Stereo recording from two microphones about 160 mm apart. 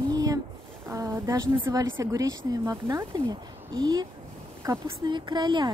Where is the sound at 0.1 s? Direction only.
20° right (ahead or behind).